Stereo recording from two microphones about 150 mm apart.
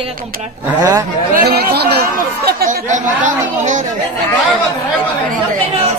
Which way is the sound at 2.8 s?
55° right (ahead or behind).